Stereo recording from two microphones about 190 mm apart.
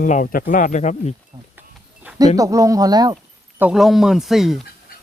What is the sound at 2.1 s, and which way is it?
Speech, 20° right (ahead or behind).